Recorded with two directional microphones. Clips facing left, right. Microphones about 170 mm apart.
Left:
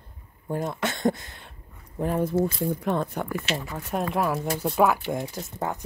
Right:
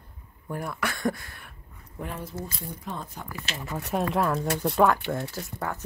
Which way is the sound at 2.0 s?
50° left (ahead or behind).